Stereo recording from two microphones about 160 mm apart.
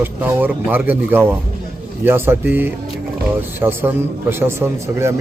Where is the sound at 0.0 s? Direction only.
10° right (ahead or behind).